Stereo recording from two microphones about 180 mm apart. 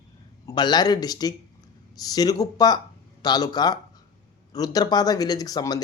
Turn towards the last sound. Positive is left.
turn(degrees=20)  # may be behind; listen again after turning